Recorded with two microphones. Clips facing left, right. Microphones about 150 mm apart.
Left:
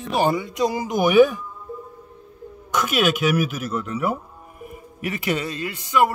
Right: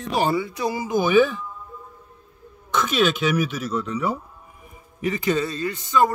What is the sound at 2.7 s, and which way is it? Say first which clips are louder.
A man's voice: even; 10° left (ahead or behind).